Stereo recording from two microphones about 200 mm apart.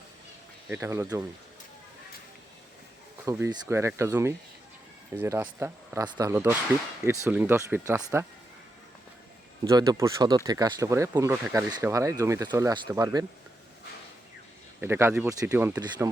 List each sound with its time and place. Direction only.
0.7 s speech: 15° right (ahead or behind)
3.2 s speech: 15° right (ahead or behind)
9.6 s speech: 20° right (ahead or behind)
14.8 s speech: 10° right (ahead or behind)